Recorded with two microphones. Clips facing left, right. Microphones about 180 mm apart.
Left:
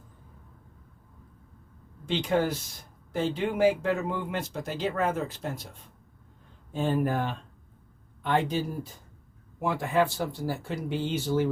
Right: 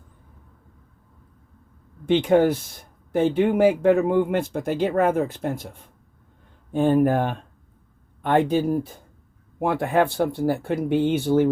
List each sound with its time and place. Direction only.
2.0 s speech: 60° right (ahead or behind)